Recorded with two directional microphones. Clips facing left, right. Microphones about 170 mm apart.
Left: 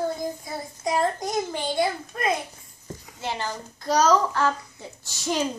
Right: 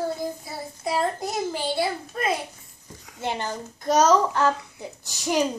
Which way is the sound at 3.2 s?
20° right (ahead or behind).